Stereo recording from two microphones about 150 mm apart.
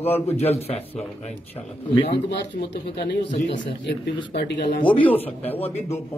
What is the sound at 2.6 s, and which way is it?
Speech, 90° left.